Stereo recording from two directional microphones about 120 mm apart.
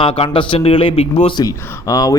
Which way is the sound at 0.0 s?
45° left (ahead or behind).